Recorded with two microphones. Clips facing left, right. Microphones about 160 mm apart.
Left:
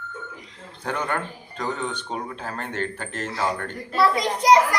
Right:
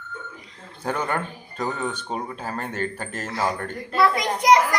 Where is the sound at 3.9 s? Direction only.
35° left (ahead or behind).